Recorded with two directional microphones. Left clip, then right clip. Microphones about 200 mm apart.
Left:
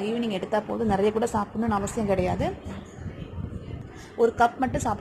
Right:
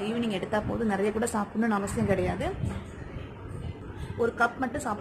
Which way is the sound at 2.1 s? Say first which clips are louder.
Left 4 dB; 20° left (ahead or behind).